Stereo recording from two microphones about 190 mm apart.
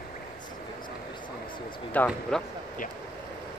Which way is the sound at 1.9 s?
10° left (ahead or behind).